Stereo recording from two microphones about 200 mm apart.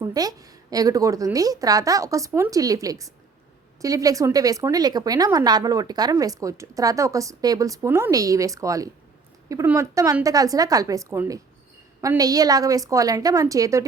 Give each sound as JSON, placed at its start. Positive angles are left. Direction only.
{"t": 0.0, "sound": "a woman's voice", "side_deg": -20}